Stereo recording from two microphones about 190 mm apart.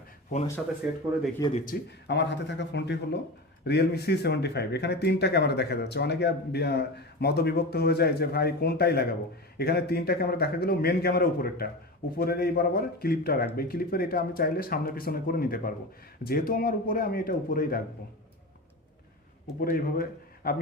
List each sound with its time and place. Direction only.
0.8 s speech: 5° right (ahead or behind)
1.4 s speech: 20° left (ahead or behind)
2.0 s speech: 65° left (ahead or behind); by 17.8 s 50° left (ahead or behind)
19.5 s a man's voice: 50° left (ahead or behind)